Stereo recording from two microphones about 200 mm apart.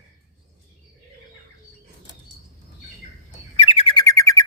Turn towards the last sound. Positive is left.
turn(degrees=15)  # may be behind; listen again after turning